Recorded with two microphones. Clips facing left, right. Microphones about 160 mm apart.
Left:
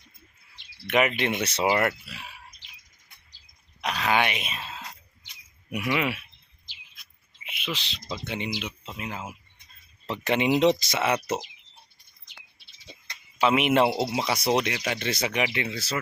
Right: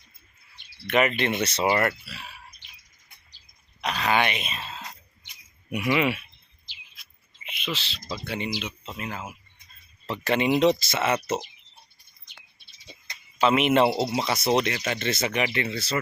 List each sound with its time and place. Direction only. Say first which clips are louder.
0.9 s speech: right 1 dB; 10° left (ahead or behind)
3.8 s groan: right 1 dB; 5° left (ahead or behind)
5.7 s speech: right 3 dB; centre (ahead or behind)
6.7 s bird: right 1 dB; 45° left (ahead or behind)
7.4 s a sound: right 1 dB; 10° left (ahead or behind)
8.1 s speech: right 1 dB; 20° left (ahead or behind)
13.4 s speech: right 1 dB; 10° left (ahead or behind)